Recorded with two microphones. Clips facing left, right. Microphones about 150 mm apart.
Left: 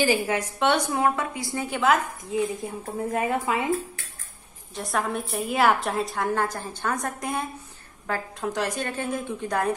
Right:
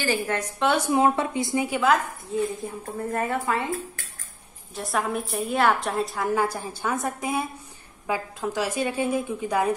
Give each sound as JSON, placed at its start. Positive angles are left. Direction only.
{"t": 0.0, "sound": "a woman's voice", "side_deg": 10}
{"t": 0.7, "sound": "a woman's voice", "side_deg": -5}
{"t": 0.9, "sound": "a woman's voice", "side_deg": -25}
{"t": 1.8, "sound": "a woman's voice", "side_deg": 0}
{"t": 3.0, "sound": "a woman's voice", "side_deg": 15}
{"t": 4.7, "sound": "a woman's voice", "side_deg": 0}